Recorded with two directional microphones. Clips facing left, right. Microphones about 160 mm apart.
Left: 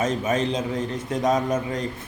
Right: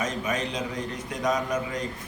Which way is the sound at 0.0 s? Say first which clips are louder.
Left 6 dB; 25° left (ahead or behind).